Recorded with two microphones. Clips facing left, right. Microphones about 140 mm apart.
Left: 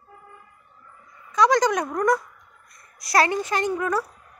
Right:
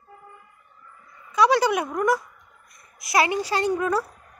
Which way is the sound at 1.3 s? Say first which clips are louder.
Even; 10° right (ahead or behind).